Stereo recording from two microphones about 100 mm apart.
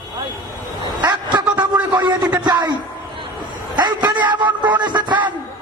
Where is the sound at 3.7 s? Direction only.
45° right (ahead or behind).